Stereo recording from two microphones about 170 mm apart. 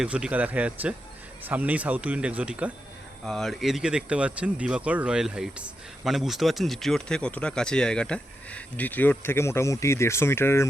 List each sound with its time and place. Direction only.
0.0 s speech: 5° right (ahead or behind)
3.2 s speech: centre (ahead or behind)